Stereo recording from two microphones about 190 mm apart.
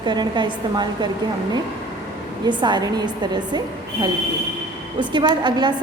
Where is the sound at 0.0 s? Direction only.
25° right (ahead or behind).